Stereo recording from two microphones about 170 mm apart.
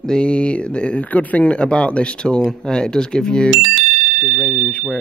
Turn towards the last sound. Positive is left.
turn(degrees=10)  # may be behind; listen again after turning